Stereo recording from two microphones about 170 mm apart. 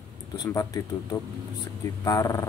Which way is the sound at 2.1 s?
20° left (ahead or behind).